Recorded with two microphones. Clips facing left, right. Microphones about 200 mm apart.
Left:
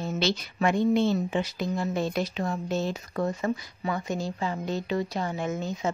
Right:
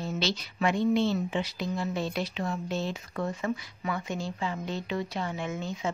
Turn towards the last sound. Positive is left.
turn(degrees=40)  # may be behind; listen again after turning